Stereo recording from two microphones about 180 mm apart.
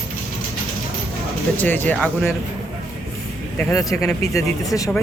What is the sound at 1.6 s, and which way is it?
Speech, 10° left (ahead or behind).